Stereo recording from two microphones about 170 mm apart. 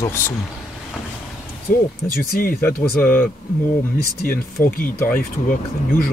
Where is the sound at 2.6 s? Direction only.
10° left (ahead or behind).